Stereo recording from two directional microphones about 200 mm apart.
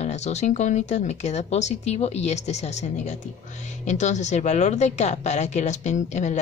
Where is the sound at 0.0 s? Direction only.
35° left (ahead or behind).